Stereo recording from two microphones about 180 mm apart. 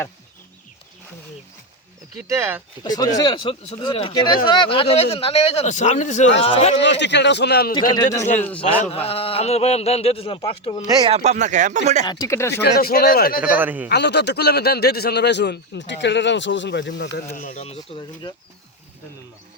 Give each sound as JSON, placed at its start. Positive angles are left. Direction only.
{"t": 2.2, "sound": "speech", "side_deg": -15}
{"t": 2.8, "sound": "speech", "side_deg": 20}
{"t": 6.8, "sound": "speech", "side_deg": 75}
{"t": 7.8, "sound": "a man's voice", "side_deg": 20}
{"t": 9.0, "sound": "speech", "side_deg": 30}
{"t": 11.1, "sound": "speech", "side_deg": -40}
{"t": 12.0, "sound": "a man's voice", "side_deg": 20}
{"t": 12.6, "sound": "speech", "side_deg": 60}
{"t": 13.4, "sound": "speech", "side_deg": -10}
{"t": 13.9, "sound": "speech", "side_deg": 70}
{"t": 17.3, "sound": "speech", "side_deg": 45}